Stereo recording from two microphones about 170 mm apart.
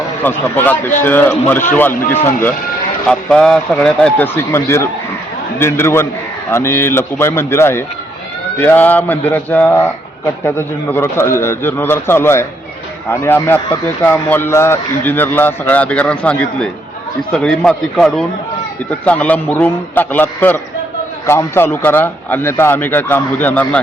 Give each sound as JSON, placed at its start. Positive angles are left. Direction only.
{"t": 0.2, "sound": "speech", "side_deg": 10}
{"t": 1.9, "sound": "speech", "side_deg": 55}
{"t": 3.1, "sound": "a man's voice", "side_deg": 5}